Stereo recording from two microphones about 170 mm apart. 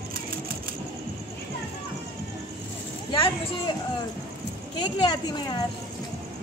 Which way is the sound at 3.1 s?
25° left (ahead or behind).